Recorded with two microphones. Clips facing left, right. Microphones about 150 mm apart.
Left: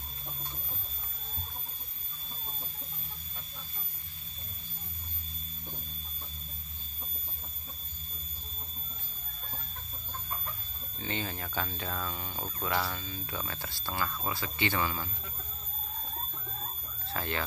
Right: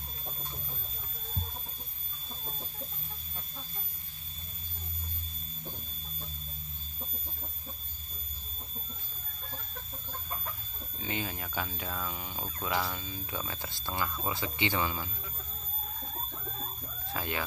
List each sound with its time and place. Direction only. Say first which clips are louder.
11.0 s speech: even; 10° right (ahead or behind)
17.1 s speech: left 1 dB; 15° right (ahead or behind)